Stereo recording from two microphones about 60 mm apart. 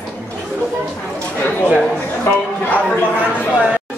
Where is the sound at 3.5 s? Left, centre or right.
Centre.